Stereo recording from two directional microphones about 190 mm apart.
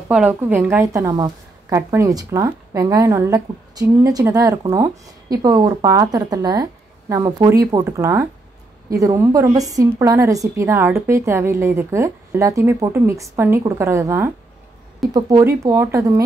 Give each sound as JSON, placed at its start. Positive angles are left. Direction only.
{"t": 0.1, "sound": "a woman's voice", "side_deg": -10}